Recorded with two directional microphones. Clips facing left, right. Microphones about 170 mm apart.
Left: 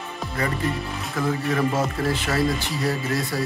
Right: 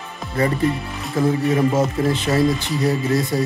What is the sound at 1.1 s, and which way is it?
Speech, 25° right (ahead or behind).